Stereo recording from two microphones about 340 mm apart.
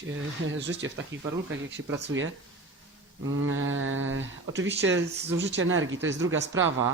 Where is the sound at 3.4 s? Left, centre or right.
Right.